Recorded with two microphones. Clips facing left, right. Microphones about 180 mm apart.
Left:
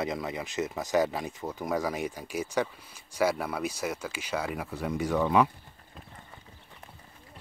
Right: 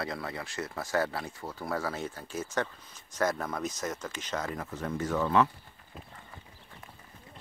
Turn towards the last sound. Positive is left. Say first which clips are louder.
# right 2 dB
turn(degrees=-5)  # may be behind; listen again after turning